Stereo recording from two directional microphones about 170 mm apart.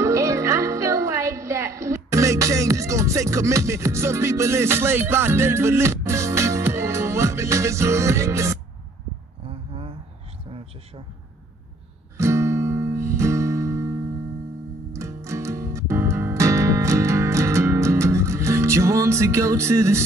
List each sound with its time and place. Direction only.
0.0 s music: 15° right (ahead or behind)
9.5 s a sound: 35° right (ahead or behind)
12.2 s music: 15° right (ahead or behind)